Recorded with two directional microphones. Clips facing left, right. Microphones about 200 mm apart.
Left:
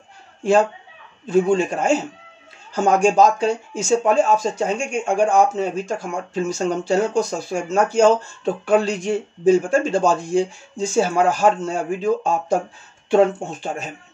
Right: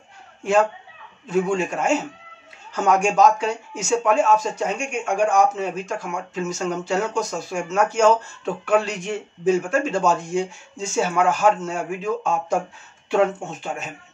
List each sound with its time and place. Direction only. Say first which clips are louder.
0.4 s speech: left 3 dB; 35° left (ahead or behind)